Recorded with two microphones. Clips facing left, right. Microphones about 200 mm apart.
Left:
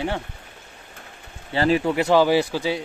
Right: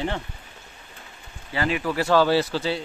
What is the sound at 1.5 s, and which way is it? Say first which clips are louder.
Speech: left 5 dB; 30° left (ahead or behind).